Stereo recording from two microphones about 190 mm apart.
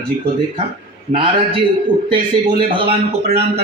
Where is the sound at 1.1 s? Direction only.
25° right (ahead or behind).